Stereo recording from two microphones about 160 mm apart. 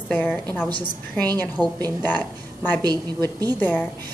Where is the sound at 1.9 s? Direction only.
10° left (ahead or behind).